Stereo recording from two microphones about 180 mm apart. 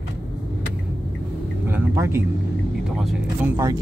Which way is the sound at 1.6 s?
15° right (ahead or behind).